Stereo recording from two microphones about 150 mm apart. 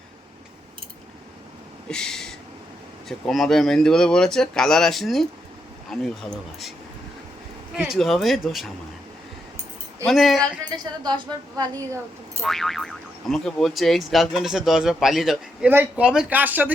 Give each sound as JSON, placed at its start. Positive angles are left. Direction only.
{"t": 1.9, "sound": "a sound", "side_deg": 5}
{"t": 3.1, "sound": "speech", "side_deg": 0}
{"t": 7.8, "sound": "speech", "side_deg": 0}
{"t": 10.1, "sound": "speech", "side_deg": 0}
{"t": 10.7, "sound": "a woman's voice", "side_deg": -30}
{"t": 12.4, "sound": "speech", "side_deg": 0}